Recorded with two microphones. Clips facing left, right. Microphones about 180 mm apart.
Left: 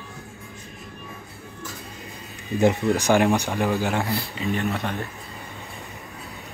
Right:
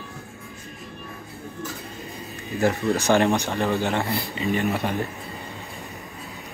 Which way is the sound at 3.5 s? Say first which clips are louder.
Even; centre (ahead or behind).